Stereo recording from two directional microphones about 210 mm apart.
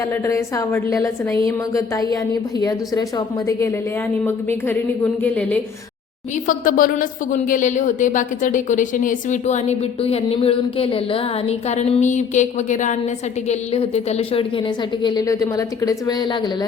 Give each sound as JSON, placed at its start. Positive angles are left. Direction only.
{"t": 0.1, "sound": "a woman's voice", "side_deg": 15}
{"t": 6.5, "sound": "a woman's voice", "side_deg": 40}